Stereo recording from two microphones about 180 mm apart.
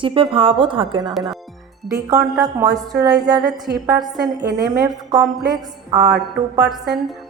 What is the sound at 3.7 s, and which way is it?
Speech, 60° right (ahead or behind).